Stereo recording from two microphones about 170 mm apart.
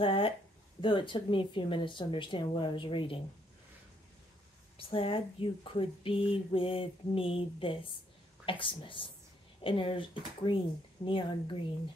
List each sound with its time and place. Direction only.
0.0 s speech: 30° left (ahead or behind)
4.7 s speech: 30° left (ahead or behind)